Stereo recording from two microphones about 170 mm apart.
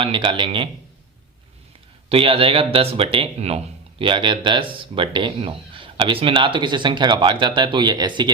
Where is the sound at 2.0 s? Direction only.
35° right (ahead or behind).